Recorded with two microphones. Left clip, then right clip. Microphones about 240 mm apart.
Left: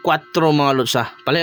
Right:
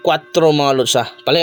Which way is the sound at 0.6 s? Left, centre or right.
Left.